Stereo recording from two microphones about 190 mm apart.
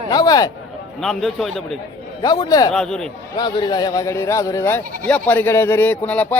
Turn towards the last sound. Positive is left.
turn(degrees=5)  # may be behind; listen again after turning